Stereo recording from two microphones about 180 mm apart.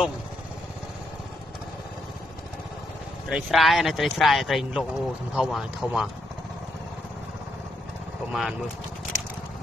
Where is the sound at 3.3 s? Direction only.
5° right (ahead or behind).